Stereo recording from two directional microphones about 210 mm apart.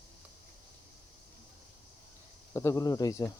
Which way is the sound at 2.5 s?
15° left (ahead or behind).